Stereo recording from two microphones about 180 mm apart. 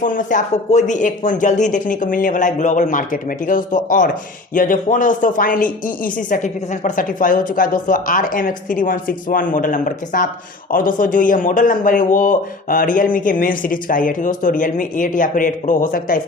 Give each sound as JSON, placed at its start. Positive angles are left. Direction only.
{"t": 0.0, "sound": "speech", "side_deg": 45}